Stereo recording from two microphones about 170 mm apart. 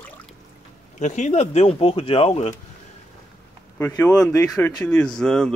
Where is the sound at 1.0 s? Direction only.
45° left (ahead or behind).